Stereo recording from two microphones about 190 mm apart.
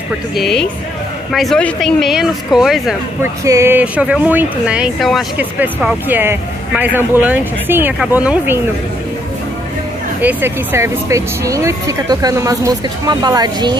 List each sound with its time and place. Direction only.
0.4 s speech: centre (ahead or behind)
3.2 s speech: 15° right (ahead or behind)
10.2 s speech: 10° right (ahead or behind)